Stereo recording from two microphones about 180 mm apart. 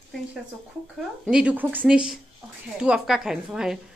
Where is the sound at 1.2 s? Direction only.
5° right (ahead or behind).